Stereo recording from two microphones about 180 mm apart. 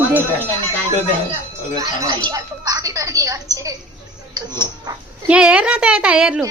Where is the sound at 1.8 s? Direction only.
25° right (ahead or behind).